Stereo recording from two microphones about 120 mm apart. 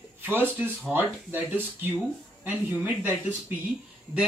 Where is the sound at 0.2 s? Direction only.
15° right (ahead or behind).